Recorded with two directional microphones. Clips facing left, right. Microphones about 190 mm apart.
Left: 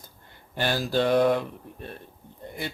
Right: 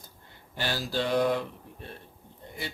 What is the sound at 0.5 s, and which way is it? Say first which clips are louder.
Speech: left 6 dB; 55° left (ahead or behind).